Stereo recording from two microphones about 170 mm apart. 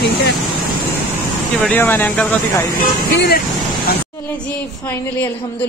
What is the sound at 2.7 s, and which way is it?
Speech, 65° left (ahead or behind).